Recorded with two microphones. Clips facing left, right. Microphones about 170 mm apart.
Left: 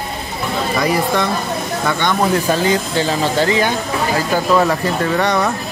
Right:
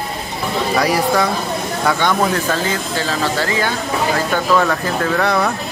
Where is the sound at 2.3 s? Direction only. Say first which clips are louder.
Left 4 dB; 15° left (ahead or behind).